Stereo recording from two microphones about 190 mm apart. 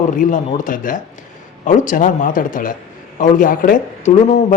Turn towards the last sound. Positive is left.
turn(degrees=40)  # may be behind; listen again after turning